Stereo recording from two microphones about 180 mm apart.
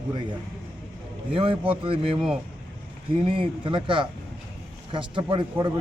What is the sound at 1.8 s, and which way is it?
Speech, 30° right (ahead or behind).